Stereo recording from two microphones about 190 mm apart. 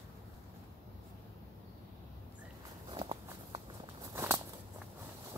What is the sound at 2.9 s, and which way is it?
Walk, 30° right (ahead or behind).